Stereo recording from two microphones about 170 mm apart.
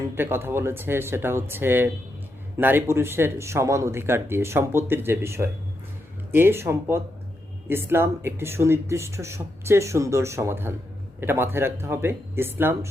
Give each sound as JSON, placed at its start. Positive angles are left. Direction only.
{"t": 0.0, "sound": "speech", "side_deg": -15}